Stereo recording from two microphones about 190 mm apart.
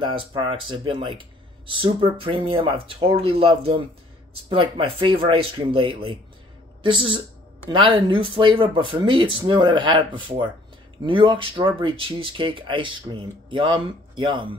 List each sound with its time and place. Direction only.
0.0 s speech: 25° right (ahead or behind)